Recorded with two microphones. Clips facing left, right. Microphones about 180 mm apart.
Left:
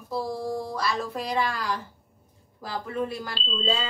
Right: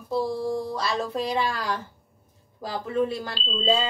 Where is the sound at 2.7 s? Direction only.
25° right (ahead or behind).